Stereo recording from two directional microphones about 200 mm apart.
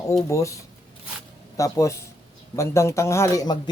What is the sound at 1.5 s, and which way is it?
Speech, 15° left (ahead or behind).